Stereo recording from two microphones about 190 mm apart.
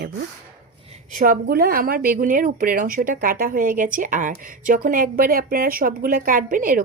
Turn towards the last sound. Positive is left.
turn(degrees=-45)  # may be behind; listen again after turning